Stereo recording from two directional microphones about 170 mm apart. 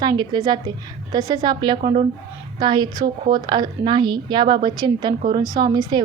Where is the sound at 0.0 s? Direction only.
25° right (ahead or behind).